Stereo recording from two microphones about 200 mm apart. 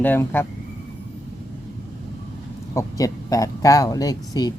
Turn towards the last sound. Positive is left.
turn(degrees=20)  # may be behind; listen again after turning